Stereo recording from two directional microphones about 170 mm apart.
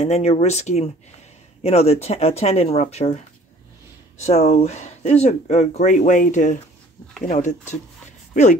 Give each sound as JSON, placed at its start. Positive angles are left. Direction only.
{"t": 0.0, "sound": "speech", "side_deg": 40}
{"t": 4.2, "sound": "speech", "side_deg": 40}